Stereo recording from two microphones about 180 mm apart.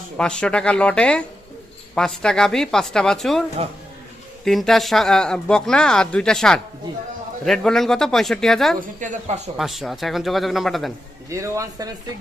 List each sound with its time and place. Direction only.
0.2 s speech: 5° left (ahead or behind)
4.4 s speech: centre (ahead or behind)
9.0 s speech: 40° right (ahead or behind)
9.6 s speech: centre (ahead or behind)
11.3 s a man's voice: 15° right (ahead or behind)